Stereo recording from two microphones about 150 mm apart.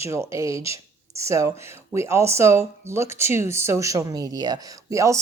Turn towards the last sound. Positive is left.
turn(degrees=-20)  # may be behind; listen again after turning